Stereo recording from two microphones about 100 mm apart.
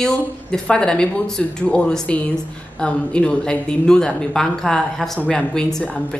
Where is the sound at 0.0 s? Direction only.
5° left (ahead or behind).